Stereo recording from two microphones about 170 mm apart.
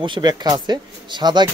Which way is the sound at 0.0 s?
25° right (ahead or behind).